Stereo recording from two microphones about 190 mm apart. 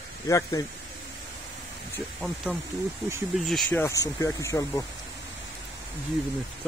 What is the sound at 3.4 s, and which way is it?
Speech, centre (ahead or behind).